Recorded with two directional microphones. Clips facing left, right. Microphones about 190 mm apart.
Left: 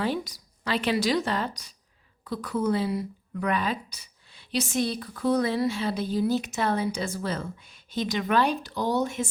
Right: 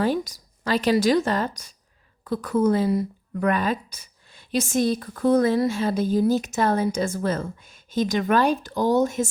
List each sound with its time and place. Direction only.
0.0 s speech: 45° right (ahead or behind)